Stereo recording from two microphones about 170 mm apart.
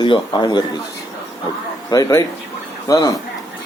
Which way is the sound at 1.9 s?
20° left (ahead or behind).